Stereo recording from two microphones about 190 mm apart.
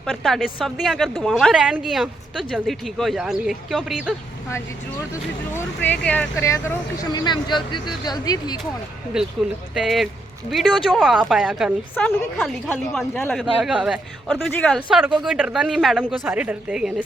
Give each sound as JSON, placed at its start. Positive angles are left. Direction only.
{"t": 0.0, "sound": "a woman's voice", "side_deg": 0}
{"t": 5.5, "sound": "speech", "side_deg": 10}
{"t": 9.2, "sound": "a woman's voice", "side_deg": -5}